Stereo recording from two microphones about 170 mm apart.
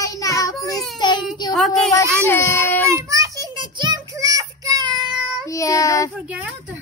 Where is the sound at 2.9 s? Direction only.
20° right (ahead or behind).